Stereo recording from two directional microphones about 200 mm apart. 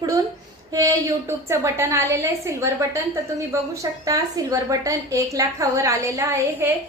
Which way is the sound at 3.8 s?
15° right (ahead or behind).